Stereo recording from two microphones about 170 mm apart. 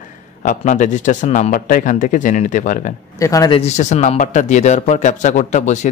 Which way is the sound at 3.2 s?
20° left (ahead or behind).